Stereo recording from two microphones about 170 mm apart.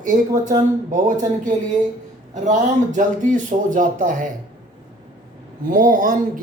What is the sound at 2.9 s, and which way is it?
Speech, 50° right (ahead or behind).